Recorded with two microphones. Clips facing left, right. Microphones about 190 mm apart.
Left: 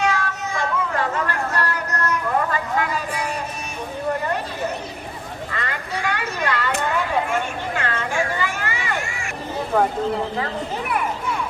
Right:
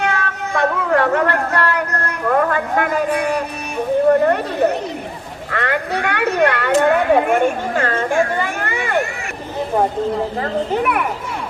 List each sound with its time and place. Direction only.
0.0 s a sound: 60° right (ahead or behind)
5.5 s speech: 60° right (ahead or behind)
10.8 s a child's voice: 65° right (ahead or behind)